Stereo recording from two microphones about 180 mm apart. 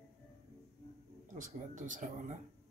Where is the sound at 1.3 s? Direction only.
45° right (ahead or behind).